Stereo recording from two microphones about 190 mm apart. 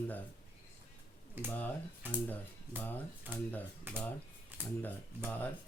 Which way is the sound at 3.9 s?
10° right (ahead or behind).